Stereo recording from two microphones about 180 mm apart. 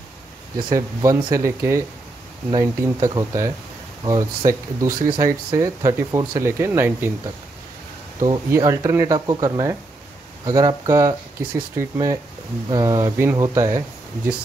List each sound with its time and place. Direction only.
0.6 s speech: 20° right (ahead or behind)
8.2 s speech: 20° right (ahead or behind)